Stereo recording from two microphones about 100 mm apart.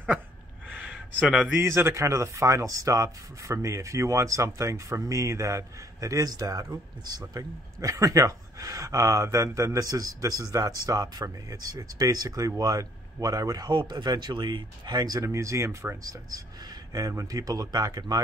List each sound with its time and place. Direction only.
0.7 s a sound: 15° right (ahead or behind)
0.9 s speech: 10° right (ahead or behind)
1.5 s speech: 25° right (ahead or behind); by 15.2 s 40° right (ahead or behind)
15.2 s speech: 30° right (ahead or behind)
16.0 s speech: 40° right (ahead or behind)